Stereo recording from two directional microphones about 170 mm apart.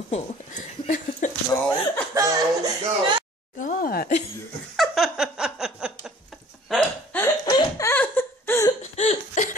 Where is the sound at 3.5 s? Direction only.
55° left (ahead or behind).